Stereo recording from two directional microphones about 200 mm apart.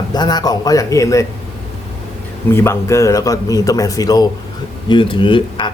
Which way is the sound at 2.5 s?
15° left (ahead or behind).